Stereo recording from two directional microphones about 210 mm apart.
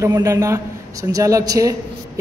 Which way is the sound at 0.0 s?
15° right (ahead or behind).